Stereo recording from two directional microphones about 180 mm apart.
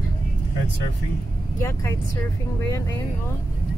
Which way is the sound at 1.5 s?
15° left (ahead or behind).